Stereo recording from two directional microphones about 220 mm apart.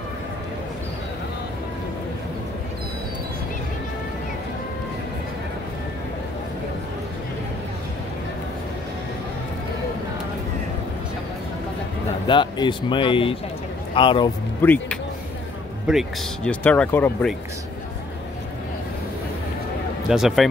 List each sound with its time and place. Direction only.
12.3 s a man's voice: 20° left (ahead or behind)
14.6 s speech: 10° left (ahead or behind)
20.1 s speech: centre (ahead or behind)